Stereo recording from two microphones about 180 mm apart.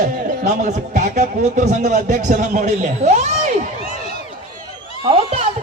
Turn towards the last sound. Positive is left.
turn(degrees=-30)  # may be behind; listen again after turning